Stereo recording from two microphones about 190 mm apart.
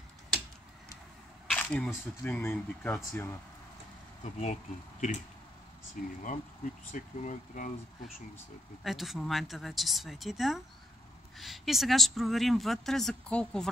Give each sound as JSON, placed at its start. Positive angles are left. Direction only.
{"t": 1.5, "sound": "speech", "side_deg": 5}
{"t": 4.2, "sound": "speech", "side_deg": 35}
{"t": 6.2, "sound": "speech", "side_deg": 40}
{"t": 8.8, "sound": "speech", "side_deg": 0}